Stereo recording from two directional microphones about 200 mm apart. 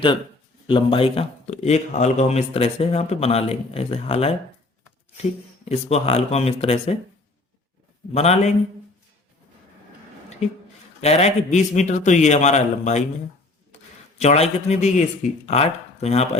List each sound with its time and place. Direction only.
0.7 s speech: 25° left (ahead or behind)
5.6 s speech: 30° left (ahead or behind)
8.1 s speech: 30° left (ahead or behind)
10.4 s speech: 35° left (ahead or behind)
14.2 s speech: 35° left (ahead or behind)